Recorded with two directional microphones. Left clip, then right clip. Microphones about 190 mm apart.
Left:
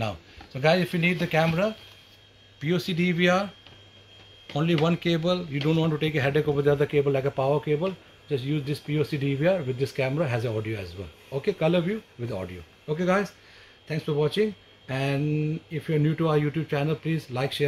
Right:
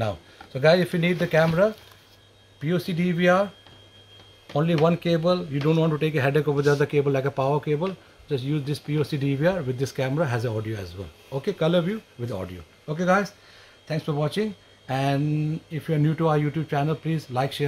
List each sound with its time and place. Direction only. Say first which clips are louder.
0.0 s a man's voice: right 3 dB; 45° right (ahead or behind)
4.8 s a man's voice: right 4 dB; 40° right (ahead or behind)